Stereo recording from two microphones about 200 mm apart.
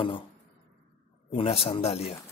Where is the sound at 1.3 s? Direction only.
30° left (ahead or behind).